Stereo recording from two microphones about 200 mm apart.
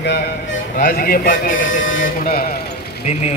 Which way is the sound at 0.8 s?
45° left (ahead or behind).